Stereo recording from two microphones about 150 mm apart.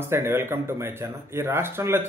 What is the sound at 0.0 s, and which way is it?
Speech, 15° right (ahead or behind).